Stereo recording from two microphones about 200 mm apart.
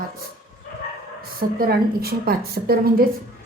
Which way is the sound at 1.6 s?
50° right (ahead or behind).